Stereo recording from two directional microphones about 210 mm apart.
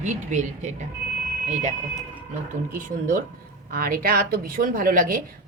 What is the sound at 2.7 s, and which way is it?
A woman's voice, 40° right (ahead or behind).